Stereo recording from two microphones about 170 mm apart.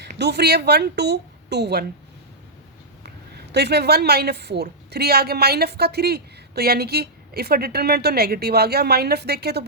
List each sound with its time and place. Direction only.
0.2 s a woman's voice: 75° right (ahead or behind)
3.3 s a woman's voice: 75° right (ahead or behind)